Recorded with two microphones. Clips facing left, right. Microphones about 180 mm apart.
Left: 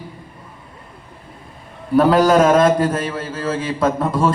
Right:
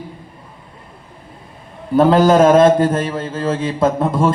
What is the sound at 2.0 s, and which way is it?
A man's voice, 25° right (ahead or behind).